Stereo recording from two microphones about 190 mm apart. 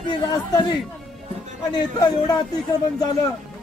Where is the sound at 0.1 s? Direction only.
20° left (ahead or behind).